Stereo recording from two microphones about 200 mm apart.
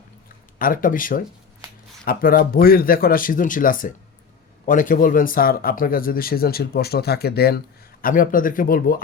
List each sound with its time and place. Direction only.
0.6 s speech: 45° left (ahead or behind)